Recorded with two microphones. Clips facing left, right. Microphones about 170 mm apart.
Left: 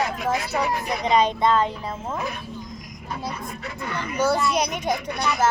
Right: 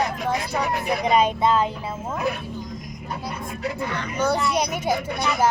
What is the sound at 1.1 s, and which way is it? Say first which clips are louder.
Speech: even; 10° right (ahead or behind).